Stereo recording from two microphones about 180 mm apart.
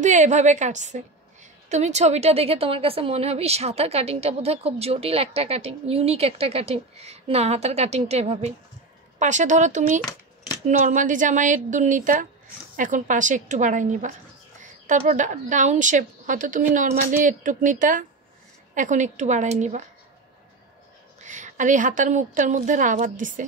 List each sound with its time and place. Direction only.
0.0 s a woman's voice: 40° right (ahead or behind)
21.2 s a woman's voice: 45° right (ahead or behind)